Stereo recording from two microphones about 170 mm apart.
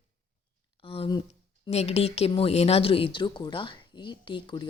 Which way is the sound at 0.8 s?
35° left (ahead or behind).